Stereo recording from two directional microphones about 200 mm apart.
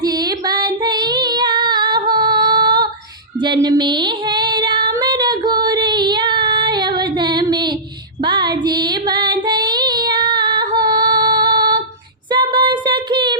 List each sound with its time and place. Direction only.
0.0 s female singing: 20° right (ahead or behind)
8.2 s child singing: 20° right (ahead or behind)
10.8 s female singing: 20° right (ahead or behind)
12.3 s a sound: 25° right (ahead or behind)